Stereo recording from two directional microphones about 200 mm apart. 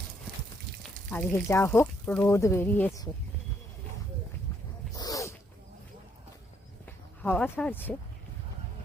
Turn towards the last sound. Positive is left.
turn(degrees=10)  # may be behind; listen again after turning